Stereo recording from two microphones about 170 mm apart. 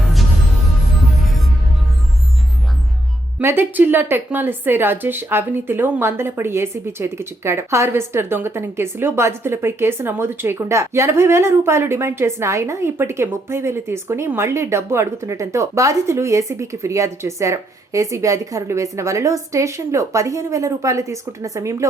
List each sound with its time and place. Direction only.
3.3 s a woman's voice: 15° right (ahead or behind)